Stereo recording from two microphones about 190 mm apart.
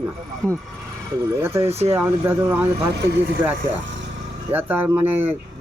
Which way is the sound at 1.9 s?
10° right (ahead or behind).